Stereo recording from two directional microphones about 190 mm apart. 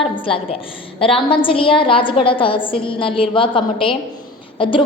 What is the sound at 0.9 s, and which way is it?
A woman's voice, 30° left (ahead or behind).